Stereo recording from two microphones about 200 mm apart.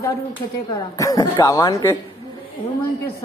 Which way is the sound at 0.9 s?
15° left (ahead or behind).